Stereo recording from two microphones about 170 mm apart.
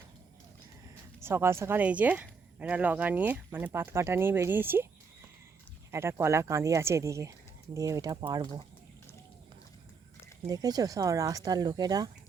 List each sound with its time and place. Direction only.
1.2 s speech: 15° right (ahead or behind)
5.9 s speech: 15° right (ahead or behind)
10.4 s speech: 20° right (ahead or behind)